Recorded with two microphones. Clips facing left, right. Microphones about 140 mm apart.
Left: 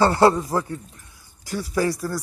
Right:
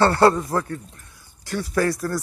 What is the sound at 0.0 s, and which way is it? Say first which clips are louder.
Speech: even; 15° left (ahead or behind).